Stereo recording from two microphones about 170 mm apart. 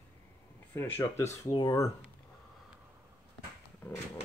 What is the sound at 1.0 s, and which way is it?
Speech, 15° left (ahead or behind).